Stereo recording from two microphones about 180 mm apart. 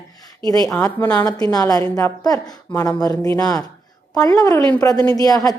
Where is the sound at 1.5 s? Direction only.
20° left (ahead or behind).